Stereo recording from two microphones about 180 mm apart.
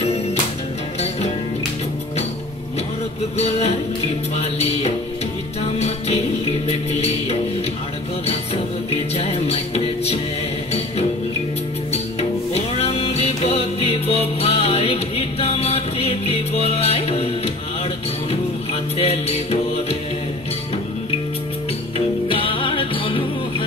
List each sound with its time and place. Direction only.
0.0 s music: 35° left (ahead or behind)
3.3 s music: 35° left (ahead or behind)
8.9 s music: 35° left (ahead or behind)
11.9 s music: 35° left (ahead or behind)
18.3 s music: 30° left (ahead or behind)
21.9 s music: 30° left (ahead or behind)